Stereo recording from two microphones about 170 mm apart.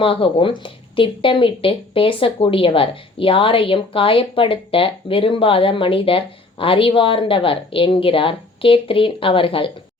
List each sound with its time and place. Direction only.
0.0 s speech: 30° left (ahead or behind)